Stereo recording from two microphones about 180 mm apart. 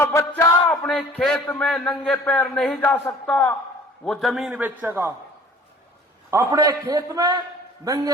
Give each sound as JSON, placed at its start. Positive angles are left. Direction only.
{"t": 0.0, "sound": "speech", "side_deg": 15}
{"t": 0.7, "sound": "a man's voice", "side_deg": 5}
{"t": 2.9, "sound": "speech", "side_deg": 20}
{"t": 3.2, "sound": "a man's voice", "side_deg": 5}
{"t": 6.3, "sound": "a man's voice", "side_deg": -20}